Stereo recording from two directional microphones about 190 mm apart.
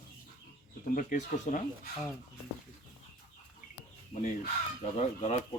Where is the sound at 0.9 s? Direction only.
45° left (ahead or behind).